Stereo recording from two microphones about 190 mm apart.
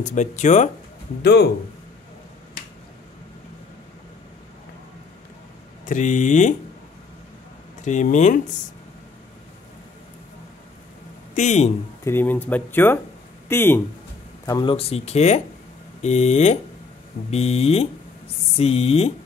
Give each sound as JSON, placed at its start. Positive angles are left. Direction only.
{"t": 0.0, "sound": "speech", "side_deg": 40}
{"t": 1.2, "sound": "speech", "side_deg": 60}
{"t": 5.9, "sound": "speech", "side_deg": 40}
{"t": 7.8, "sound": "speech", "side_deg": 40}
{"t": 11.3, "sound": "speech", "side_deg": 35}
{"t": 12.0, "sound": "speech", "side_deg": 10}